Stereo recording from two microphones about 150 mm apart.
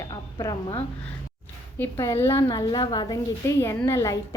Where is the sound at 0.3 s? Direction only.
30° left (ahead or behind).